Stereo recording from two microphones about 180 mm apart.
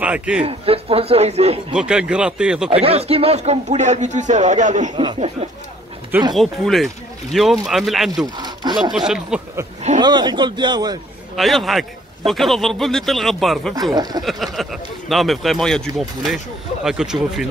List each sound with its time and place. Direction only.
0.0 s a man's voice: 5° right (ahead or behind)
0.4 s speech: 35° right (ahead or behind)
1.7 s speech: 5° right (ahead or behind)
2.7 s speech: 35° right (ahead or behind)
4.9 s speech: 30° right (ahead or behind)
6.3 s speech: centre (ahead or behind)
8.4 s sawing: 25° right (ahead or behind)
8.9 s speech: 5° right (ahead or behind)
9.9 s a man's voice: 25° right (ahead or behind)
11.3 s speech: centre (ahead or behind)
13.9 s a man's voice: 20° right (ahead or behind)
14.2 s speech: centre (ahead or behind)